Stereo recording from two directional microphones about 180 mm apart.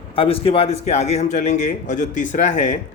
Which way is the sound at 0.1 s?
30° left (ahead or behind).